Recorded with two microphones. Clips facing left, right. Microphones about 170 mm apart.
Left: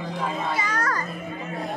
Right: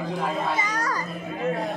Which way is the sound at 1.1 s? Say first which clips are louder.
Right 5 dB; centre (ahead or behind).